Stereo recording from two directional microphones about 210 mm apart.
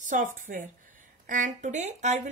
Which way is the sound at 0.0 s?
35° right (ahead or behind).